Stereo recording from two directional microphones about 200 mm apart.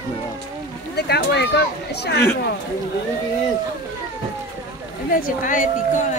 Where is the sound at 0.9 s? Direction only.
55° left (ahead or behind).